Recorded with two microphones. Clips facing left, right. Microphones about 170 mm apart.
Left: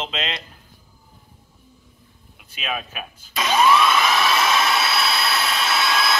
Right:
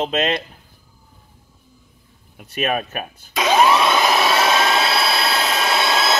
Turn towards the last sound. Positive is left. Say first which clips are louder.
# right 3 dB
turn(degrees=-25)  # may be behind; listen again after turning